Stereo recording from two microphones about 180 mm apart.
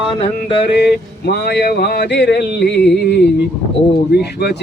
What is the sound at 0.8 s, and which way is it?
Speech, 65° left (ahead or behind).